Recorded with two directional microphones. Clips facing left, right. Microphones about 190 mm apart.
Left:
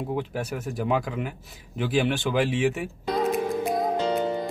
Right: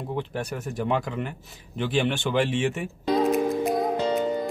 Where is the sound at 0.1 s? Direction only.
5° left (ahead or behind).